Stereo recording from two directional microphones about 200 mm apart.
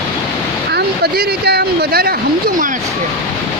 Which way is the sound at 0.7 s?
55° right (ahead or behind).